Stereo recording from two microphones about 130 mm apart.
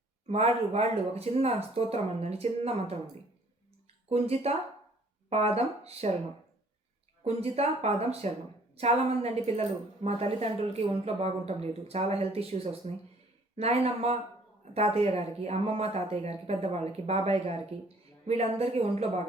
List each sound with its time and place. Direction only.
0.3 s a woman's voice: 55° right (ahead or behind)
4.1 s a woman's voice: 50° right (ahead or behind)
7.3 s a woman's voice: 50° right (ahead or behind)